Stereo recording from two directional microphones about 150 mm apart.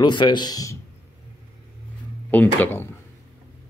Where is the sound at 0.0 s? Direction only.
30° left (ahead or behind).